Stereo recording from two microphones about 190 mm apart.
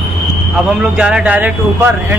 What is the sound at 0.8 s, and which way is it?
Speech, 5° right (ahead or behind).